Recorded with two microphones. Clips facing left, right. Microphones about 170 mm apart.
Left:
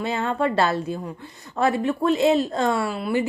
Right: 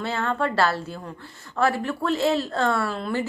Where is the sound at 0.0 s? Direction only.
15° left (ahead or behind).